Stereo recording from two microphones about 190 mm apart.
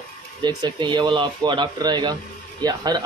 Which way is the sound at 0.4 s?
20° right (ahead or behind).